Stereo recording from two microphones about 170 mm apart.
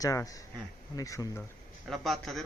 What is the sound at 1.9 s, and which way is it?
Speech, centre (ahead or behind).